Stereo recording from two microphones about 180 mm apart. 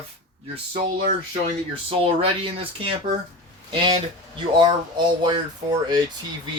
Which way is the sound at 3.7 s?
25° right (ahead or behind).